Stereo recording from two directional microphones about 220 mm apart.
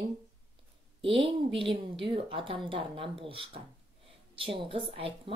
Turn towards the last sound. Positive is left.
turn(degrees=-25)  # may be behind; listen again after turning